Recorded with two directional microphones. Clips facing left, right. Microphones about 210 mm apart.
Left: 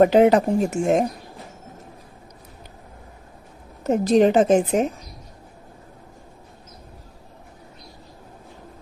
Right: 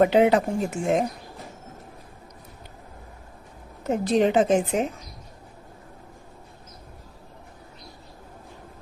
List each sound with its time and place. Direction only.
0.0 s speech: 40° left (ahead or behind)
3.8 s speech: 40° left (ahead or behind)